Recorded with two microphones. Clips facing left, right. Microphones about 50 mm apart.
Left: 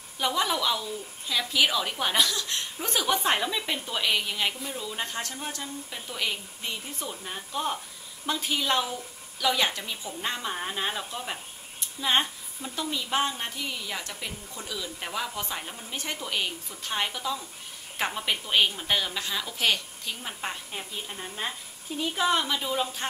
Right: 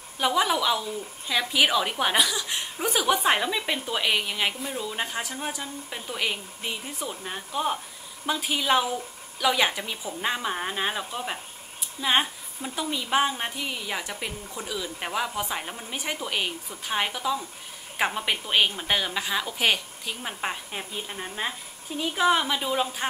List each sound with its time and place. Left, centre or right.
0.2 s a woman's voice: centre